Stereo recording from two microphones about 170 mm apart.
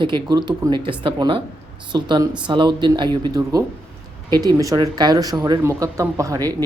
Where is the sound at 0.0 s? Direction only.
25° right (ahead or behind).